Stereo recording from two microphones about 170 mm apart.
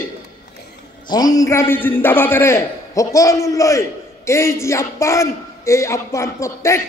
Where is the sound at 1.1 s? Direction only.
20° left (ahead or behind).